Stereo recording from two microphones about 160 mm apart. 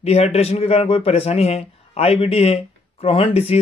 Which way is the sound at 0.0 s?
40° left (ahead or behind).